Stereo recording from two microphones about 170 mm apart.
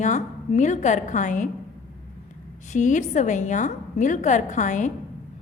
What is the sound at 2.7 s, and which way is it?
A woman's voice, 45° left (ahead or behind).